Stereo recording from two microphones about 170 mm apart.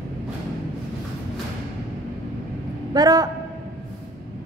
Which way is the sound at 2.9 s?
20° right (ahead or behind).